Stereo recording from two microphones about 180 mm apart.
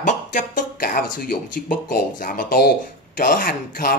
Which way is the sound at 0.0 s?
45° left (ahead or behind).